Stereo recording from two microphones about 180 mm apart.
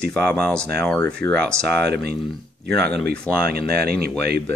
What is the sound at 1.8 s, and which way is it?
Speech, 65° right (ahead or behind).